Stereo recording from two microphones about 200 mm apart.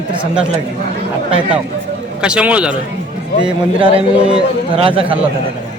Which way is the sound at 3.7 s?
25° right (ahead or behind).